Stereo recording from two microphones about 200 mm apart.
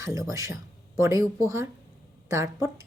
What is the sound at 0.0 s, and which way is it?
A woman's voice, 15° right (ahead or behind).